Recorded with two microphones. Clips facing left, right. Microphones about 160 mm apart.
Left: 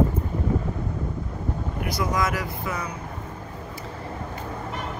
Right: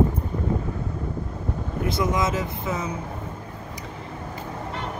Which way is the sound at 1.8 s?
25° right (ahead or behind).